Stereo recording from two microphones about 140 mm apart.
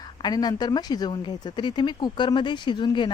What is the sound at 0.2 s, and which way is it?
Speech, 30° left (ahead or behind).